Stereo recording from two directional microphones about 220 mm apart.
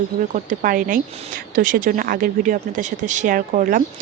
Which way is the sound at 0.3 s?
40° right (ahead or behind).